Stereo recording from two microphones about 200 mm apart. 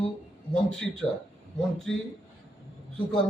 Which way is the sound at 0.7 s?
5° left (ahead or behind).